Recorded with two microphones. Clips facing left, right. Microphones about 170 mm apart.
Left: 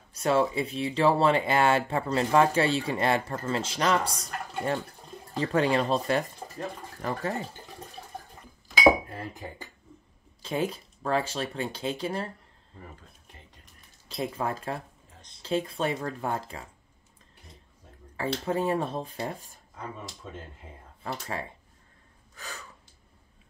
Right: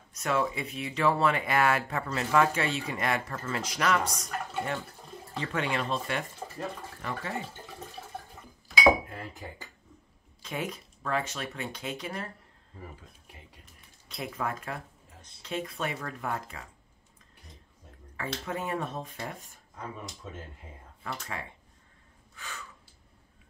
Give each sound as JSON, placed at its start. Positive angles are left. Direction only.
{"t": 0.1, "sound": "speech", "side_deg": 30}
{"t": 10.4, "sound": "speech", "side_deg": 30}
{"t": 13.3, "sound": "a sound", "side_deg": -10}
{"t": 14.0, "sound": "speech", "side_deg": 30}
{"t": 18.4, "sound": "speech", "side_deg": 30}
{"t": 21.0, "sound": "speech", "side_deg": 35}
{"t": 22.3, "sound": "gasp", "side_deg": 40}